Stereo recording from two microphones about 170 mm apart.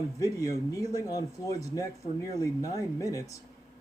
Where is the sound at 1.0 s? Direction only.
20° left (ahead or behind).